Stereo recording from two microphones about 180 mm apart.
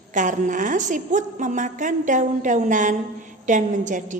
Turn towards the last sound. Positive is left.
turn(degrees=-45)  # may be behind; listen again after turning